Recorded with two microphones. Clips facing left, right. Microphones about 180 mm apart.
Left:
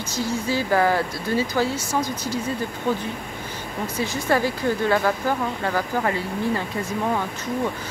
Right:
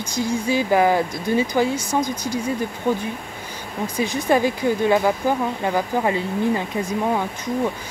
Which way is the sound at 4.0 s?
15° right (ahead or behind).